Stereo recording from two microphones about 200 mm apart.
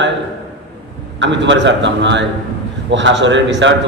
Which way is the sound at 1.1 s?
65° right (ahead or behind).